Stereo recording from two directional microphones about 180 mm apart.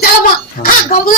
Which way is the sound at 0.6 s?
50° left (ahead or behind).